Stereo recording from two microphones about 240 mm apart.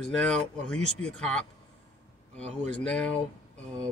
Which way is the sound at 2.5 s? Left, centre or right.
Centre.